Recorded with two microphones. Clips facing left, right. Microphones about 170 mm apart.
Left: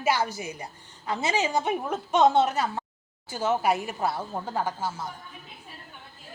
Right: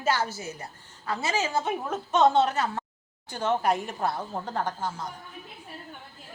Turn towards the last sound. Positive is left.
turn(degrees=5)  # may be behind; listen again after turning